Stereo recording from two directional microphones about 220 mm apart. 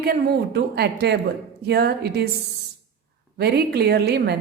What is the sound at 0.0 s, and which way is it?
A woman's voice, 45° right (ahead or behind).